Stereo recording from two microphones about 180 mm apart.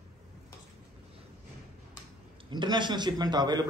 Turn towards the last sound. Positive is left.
turn(degrees=-25)  # may be behind; listen again after turning